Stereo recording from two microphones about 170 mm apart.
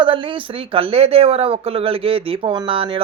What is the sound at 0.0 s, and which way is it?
A man's voice, 30° right (ahead or behind).